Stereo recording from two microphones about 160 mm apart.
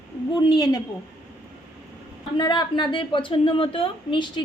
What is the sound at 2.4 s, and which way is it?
A woman's voice, 30° left (ahead or behind).